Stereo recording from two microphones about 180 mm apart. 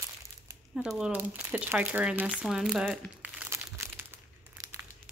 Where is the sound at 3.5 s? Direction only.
15° right (ahead or behind).